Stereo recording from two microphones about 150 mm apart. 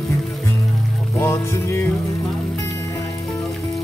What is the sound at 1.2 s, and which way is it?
Music, 15° left (ahead or behind).